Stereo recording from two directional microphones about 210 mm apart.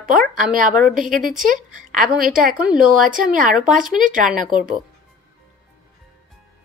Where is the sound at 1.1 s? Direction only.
40° right (ahead or behind).